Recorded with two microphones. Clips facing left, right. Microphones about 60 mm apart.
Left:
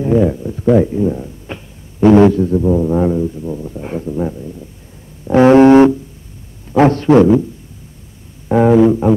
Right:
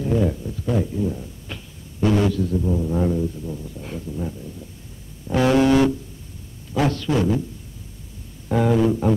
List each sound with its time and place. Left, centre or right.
0.0 s speech: left
5.2 s a sound: left
6.7 s a man's voice: left
7.1 s a man's voice: left
8.5 s speech: left
9.0 s a sound: centre